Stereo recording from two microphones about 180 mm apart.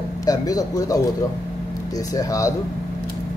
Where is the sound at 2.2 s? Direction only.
20° left (ahead or behind).